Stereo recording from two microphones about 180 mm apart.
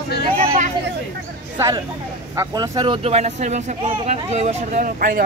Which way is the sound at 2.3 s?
20° right (ahead or behind).